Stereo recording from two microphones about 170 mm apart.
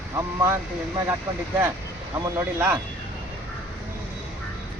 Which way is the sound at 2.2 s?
15° right (ahead or behind).